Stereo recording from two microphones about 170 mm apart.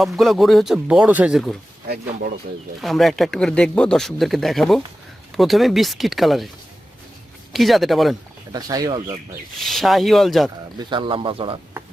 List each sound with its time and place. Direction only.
0.0 s speech: centre (ahead or behind)
2.8 s speech: centre (ahead or behind)
7.5 s speech: centre (ahead or behind)
8.5 s speech: 20° right (ahead or behind)
9.6 s speech: centre (ahead or behind)
10.8 s speech: 30° right (ahead or behind)